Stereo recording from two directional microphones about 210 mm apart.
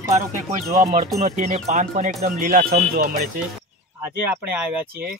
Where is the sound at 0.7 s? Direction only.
35° right (ahead or behind).